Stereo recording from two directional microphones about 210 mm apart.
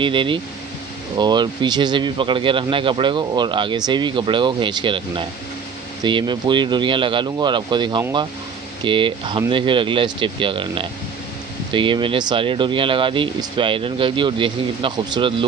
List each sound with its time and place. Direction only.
0.0 s speech: 25° right (ahead or behind)